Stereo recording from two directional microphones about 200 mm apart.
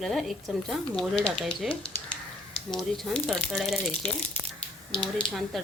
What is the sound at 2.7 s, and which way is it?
Speech, centre (ahead or behind).